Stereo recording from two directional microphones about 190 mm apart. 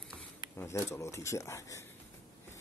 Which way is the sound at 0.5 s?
15° left (ahead or behind).